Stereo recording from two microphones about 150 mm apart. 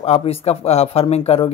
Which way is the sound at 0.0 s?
40° left (ahead or behind).